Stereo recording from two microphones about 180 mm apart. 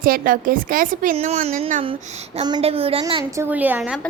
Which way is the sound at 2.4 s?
30° right (ahead or behind).